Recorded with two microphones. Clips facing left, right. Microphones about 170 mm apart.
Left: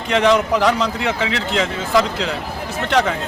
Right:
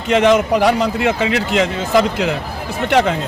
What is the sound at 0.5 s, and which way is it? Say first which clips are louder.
Speech: right 3 dB; 10° right (ahead or behind).